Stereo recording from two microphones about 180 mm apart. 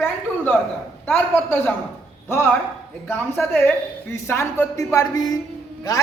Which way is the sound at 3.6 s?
15° left (ahead or behind).